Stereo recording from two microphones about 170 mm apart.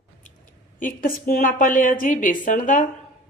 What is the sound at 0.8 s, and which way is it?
A woman's voice, 55° left (ahead or behind).